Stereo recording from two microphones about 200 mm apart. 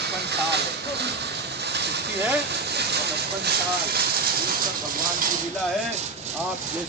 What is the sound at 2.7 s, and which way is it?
Vehicle, 55° right (ahead or behind).